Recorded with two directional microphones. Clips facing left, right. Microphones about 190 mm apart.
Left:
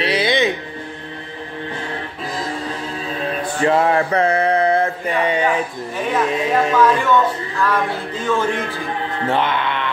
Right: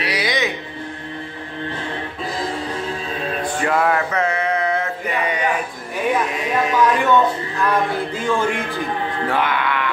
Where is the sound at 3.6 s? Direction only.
25° left (ahead or behind).